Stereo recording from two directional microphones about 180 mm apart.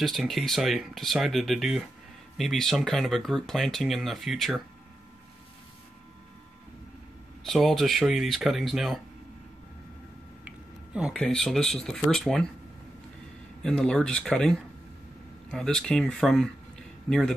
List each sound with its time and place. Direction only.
0.0 s speech: centre (ahead or behind)
7.4 s speech: centre (ahead or behind)
10.4 s a sound: 5° right (ahead or behind)
11.1 s speech: 5° left (ahead or behind)
13.6 s speech: 5° left (ahead or behind)